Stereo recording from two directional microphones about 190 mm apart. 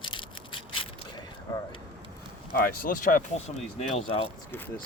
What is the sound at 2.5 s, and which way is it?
Speech, 50° left (ahead or behind).